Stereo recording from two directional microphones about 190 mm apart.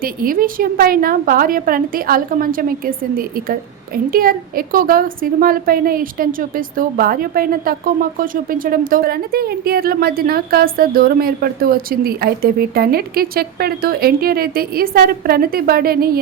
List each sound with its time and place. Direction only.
0.0 s a woman's voice: 50° right (ahead or behind)